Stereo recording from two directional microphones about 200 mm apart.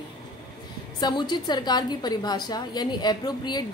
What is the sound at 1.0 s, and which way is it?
A woman's voice, 20° left (ahead or behind).